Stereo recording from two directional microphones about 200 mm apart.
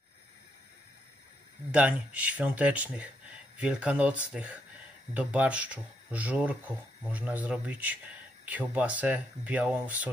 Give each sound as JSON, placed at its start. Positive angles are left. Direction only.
{"t": 1.7, "sound": "speech", "side_deg": -5}